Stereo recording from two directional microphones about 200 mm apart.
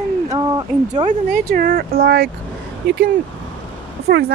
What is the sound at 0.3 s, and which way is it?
Speech, 20° right (ahead or behind).